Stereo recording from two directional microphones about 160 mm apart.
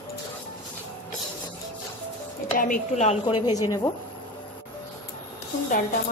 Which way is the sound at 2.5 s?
55° left (ahead or behind).